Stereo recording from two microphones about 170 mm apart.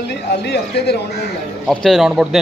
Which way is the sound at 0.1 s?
80° left.